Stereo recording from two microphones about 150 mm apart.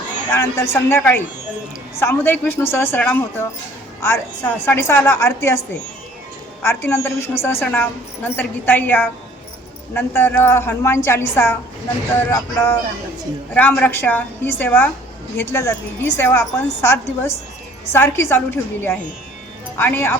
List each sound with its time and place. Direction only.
0.3 s a woman's voice: 15° left (ahead or behind)
6.6 s a woman's voice: 15° left (ahead or behind)